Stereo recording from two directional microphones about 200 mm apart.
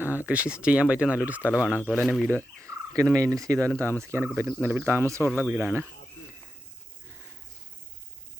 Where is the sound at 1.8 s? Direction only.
10° left (ahead or behind).